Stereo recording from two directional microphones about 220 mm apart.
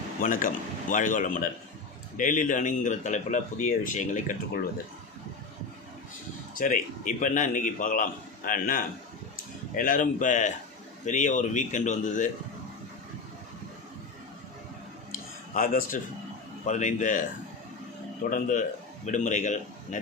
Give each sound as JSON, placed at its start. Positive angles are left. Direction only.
{"t": 0.2, "sound": "speech", "side_deg": 35}
{"t": 6.5, "sound": "speech", "side_deg": 35}
{"t": 15.1, "sound": "a sound", "side_deg": 40}
{"t": 16.6, "sound": "speech", "side_deg": 35}
{"t": 18.3, "sound": "speech", "side_deg": 35}